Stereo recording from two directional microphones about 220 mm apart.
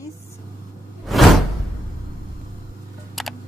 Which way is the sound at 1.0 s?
Centre (ahead or behind).